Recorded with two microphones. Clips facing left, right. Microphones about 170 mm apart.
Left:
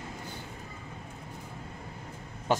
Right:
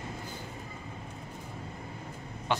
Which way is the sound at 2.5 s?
45° left (ahead or behind).